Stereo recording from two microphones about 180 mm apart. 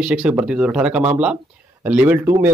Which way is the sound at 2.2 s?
20° right (ahead or behind).